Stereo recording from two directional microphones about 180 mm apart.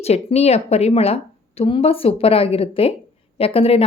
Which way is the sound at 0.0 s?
35° left (ahead or behind).